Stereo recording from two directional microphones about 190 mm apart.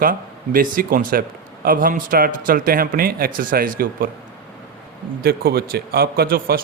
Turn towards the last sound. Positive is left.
turn(degrees=-55)  # may be behind; listen again after turning